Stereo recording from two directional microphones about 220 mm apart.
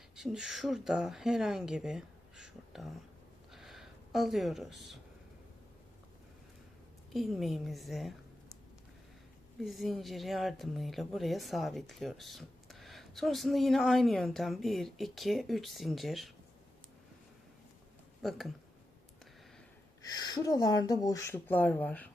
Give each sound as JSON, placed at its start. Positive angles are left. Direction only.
{"t": 0.2, "sound": "speech", "side_deg": 0}
{"t": 3.5, "sound": "a sound", "side_deg": 0}
{"t": 7.1, "sound": "speech", "side_deg": 0}
{"t": 9.6, "sound": "speech", "side_deg": 0}
{"t": 18.2, "sound": "speech", "side_deg": 0}
{"t": 20.0, "sound": "speech", "side_deg": 15}